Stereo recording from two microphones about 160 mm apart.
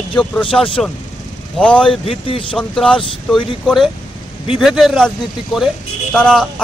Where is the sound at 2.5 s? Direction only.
5° left (ahead or behind).